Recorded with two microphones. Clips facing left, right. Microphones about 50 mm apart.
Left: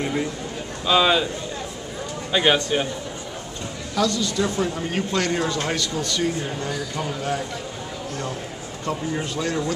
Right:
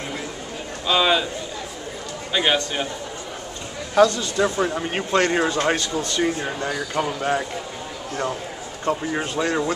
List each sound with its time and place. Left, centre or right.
0.8 s a man's voice: centre
2.3 s a man's voice: centre
3.9 s speech: right
8.8 s speech: right